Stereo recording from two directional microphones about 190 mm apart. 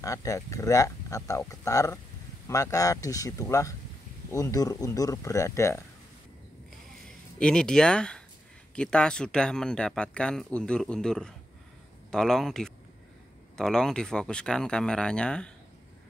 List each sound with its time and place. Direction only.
0.0 s speech: 15° left (ahead or behind)
7.3 s speech: 5° left (ahead or behind)